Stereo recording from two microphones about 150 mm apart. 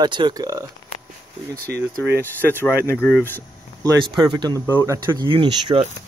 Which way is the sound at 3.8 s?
25° right (ahead or behind).